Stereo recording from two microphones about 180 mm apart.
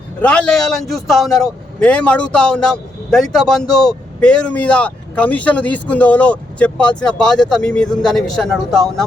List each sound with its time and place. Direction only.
0.2 s a man's voice: 5° left (ahead or behind)